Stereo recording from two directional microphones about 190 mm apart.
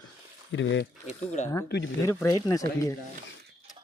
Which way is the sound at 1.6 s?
60° left (ahead or behind).